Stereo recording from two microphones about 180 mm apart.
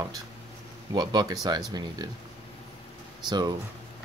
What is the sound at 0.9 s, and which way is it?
Speech, 20° right (ahead or behind).